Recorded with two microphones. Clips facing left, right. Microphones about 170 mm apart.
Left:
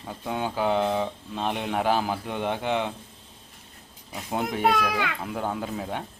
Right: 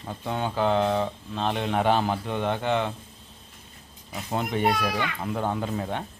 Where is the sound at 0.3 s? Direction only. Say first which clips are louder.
Right 1 dB; 10° left (ahead or behind).